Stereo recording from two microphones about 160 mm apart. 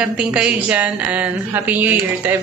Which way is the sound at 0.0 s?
5° right (ahead or behind).